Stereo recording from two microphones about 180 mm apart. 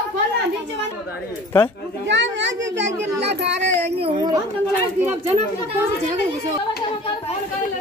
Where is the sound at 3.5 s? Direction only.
35° right (ahead or behind).